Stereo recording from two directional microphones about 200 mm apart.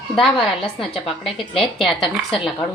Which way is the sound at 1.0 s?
Centre (ahead or behind).